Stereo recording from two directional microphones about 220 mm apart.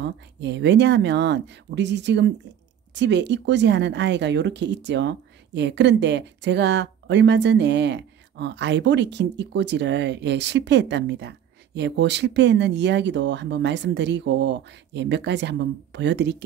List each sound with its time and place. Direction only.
0.0 s speech: 50° right (ahead or behind)